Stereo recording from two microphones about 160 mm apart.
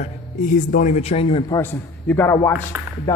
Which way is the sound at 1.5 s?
15° left (ahead or behind).